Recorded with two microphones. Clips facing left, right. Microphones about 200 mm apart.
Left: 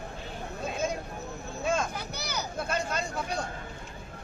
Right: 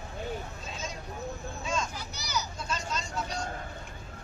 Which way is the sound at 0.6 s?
55° left (ahead or behind).